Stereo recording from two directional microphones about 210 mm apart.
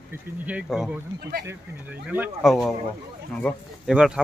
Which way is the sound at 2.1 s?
5° right (ahead or behind).